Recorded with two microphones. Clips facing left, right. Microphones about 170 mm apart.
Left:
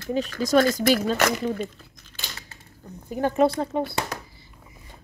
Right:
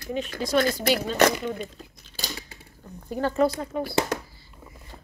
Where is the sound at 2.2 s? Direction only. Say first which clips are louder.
Right 5 dB; 35° right (ahead or behind).